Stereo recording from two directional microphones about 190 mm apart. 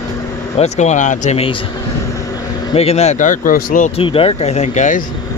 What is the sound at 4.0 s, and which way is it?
Speech, 30° left (ahead or behind).